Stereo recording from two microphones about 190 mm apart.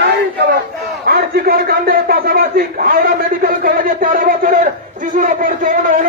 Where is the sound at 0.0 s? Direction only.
55° right (ahead or behind).